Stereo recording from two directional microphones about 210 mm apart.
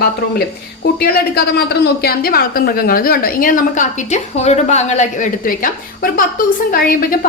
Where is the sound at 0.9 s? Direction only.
45° left (ahead or behind).